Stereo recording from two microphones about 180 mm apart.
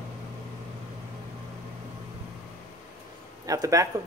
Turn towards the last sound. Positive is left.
turn(degrees=-20)  # may be behind; listen again after turning